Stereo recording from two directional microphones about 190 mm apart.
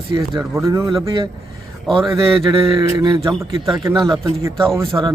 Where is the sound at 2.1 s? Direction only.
15° right (ahead or behind).